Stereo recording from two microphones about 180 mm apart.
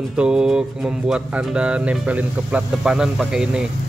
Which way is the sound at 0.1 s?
5° right (ahead or behind).